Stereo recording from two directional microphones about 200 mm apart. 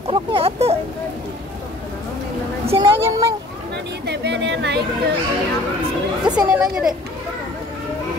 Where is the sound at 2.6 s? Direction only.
30° right (ahead or behind).